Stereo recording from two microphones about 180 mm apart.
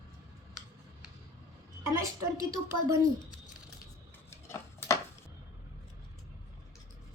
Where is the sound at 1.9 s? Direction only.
15° right (ahead or behind).